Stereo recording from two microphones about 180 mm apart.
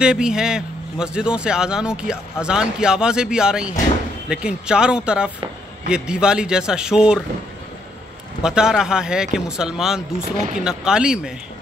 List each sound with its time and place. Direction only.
0.0 s a man's voice: 5° right (ahead or behind)
8.4 s a man's voice: 5° right (ahead or behind)
10.3 s speech: 45° right (ahead or behind)
10.6 s a man's voice: 5° right (ahead or behind)